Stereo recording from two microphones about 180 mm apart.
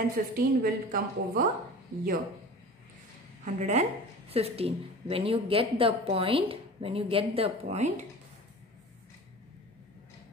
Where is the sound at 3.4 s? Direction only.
40° right (ahead or behind).